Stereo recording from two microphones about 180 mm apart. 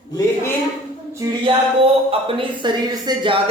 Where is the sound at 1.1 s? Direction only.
25° right (ahead or behind).